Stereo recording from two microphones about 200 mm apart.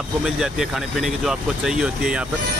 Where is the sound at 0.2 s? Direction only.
Centre (ahead or behind).